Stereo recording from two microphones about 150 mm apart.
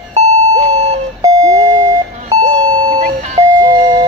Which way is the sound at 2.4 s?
40° right (ahead or behind).